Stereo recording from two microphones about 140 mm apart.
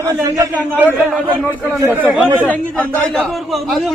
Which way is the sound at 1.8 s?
15° right (ahead or behind).